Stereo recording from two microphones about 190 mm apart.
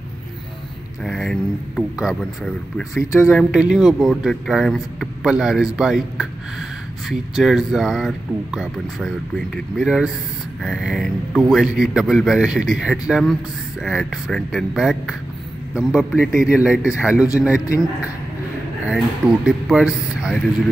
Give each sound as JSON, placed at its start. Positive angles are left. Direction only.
{"t": 1.0, "sound": "a man's voice", "side_deg": 0}
{"t": 17.6, "sound": "a man's voice", "side_deg": 15}
{"t": 19.4, "sound": "a man's voice", "side_deg": 0}